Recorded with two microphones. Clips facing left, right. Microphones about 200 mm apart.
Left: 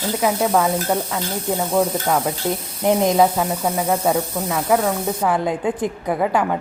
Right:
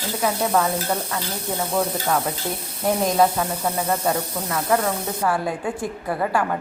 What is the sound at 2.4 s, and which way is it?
A woman's voice, 20° left (ahead or behind).